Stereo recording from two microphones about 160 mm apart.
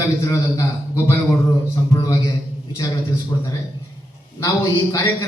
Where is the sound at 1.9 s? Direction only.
20° left (ahead or behind).